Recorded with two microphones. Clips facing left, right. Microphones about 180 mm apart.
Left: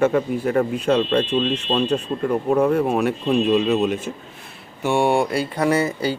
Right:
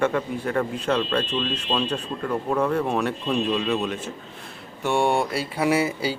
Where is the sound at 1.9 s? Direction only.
20° left (ahead or behind).